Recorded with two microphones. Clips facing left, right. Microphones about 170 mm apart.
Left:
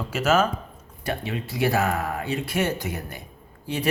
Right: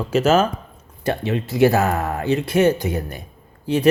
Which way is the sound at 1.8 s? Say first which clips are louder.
Right 4 dB; 45° right (ahead or behind).